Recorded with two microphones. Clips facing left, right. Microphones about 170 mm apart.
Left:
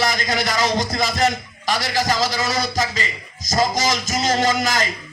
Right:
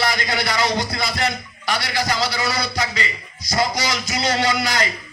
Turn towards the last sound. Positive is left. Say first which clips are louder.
# left 1 dB
turn(degrees=45)  # may be behind; listen again after turning